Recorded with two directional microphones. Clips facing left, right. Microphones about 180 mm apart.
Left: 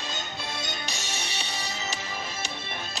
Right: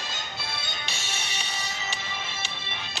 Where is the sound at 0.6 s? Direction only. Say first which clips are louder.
Left 2 dB; 40° left (ahead or behind).